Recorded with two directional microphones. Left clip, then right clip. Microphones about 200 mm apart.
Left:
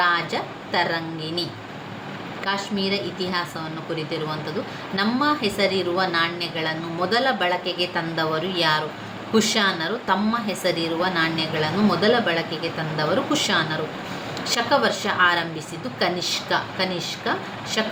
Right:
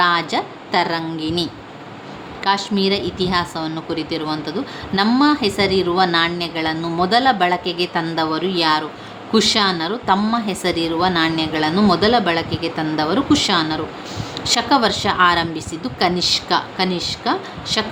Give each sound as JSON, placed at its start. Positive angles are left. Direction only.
{"t": 0.0, "sound": "a woman's voice", "side_deg": -45}
{"t": 2.4, "sound": "a woman's voice", "side_deg": -50}